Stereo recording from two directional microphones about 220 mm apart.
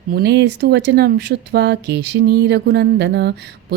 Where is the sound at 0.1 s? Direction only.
50° right (ahead or behind).